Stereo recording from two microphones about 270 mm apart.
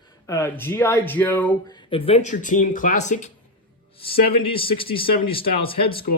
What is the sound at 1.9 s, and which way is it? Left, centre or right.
Speech, left.